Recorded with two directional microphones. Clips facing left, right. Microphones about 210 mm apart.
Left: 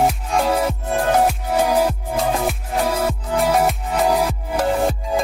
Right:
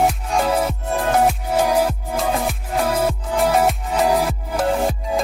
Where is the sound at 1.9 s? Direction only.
Centre (ahead or behind).